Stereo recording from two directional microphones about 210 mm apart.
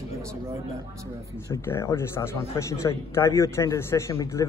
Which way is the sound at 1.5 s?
15° left (ahead or behind).